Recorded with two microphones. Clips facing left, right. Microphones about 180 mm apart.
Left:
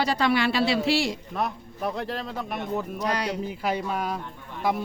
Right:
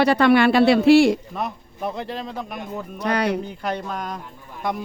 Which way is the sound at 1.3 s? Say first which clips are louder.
Even; centre (ahead or behind).